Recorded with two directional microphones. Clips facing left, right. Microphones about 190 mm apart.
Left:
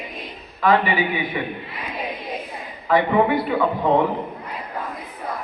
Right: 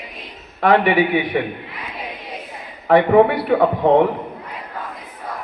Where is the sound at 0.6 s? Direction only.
70° right (ahead or behind).